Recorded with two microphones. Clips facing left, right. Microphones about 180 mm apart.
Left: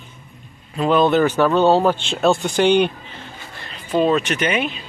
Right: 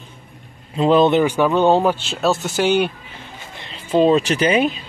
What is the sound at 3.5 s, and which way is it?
Speech, 25° right (ahead or behind).